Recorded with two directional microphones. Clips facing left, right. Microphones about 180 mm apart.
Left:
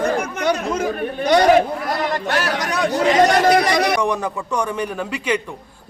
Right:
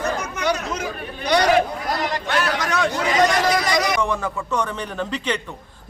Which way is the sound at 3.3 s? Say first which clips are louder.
Left 5 dB; 65° left (ahead or behind).